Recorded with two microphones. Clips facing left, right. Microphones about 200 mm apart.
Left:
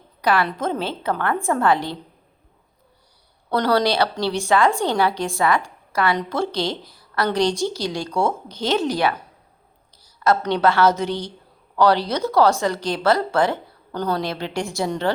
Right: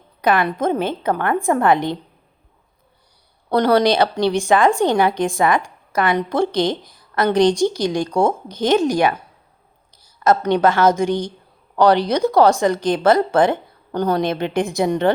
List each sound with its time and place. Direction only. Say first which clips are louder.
0.2 s a woman's voice: right 3 dB; 20° right (ahead or behind)
3.5 s a woman's voice: right 4 dB; 15° right (ahead or behind)
10.2 s a woman's voice: right 3 dB; 15° right (ahead or behind)